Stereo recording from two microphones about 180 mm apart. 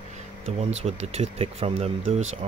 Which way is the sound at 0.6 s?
35° right (ahead or behind).